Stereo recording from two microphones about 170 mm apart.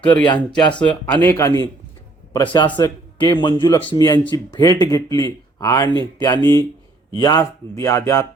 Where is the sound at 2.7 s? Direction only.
25° left (ahead or behind).